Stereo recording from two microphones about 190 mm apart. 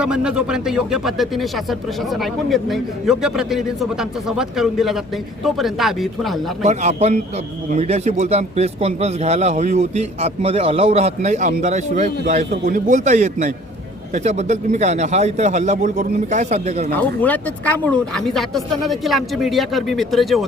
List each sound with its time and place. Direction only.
0.0 s speech: 5° right (ahead or behind)
6.7 s speech: 35° right (ahead or behind)
17.2 s speech: 10° left (ahead or behind)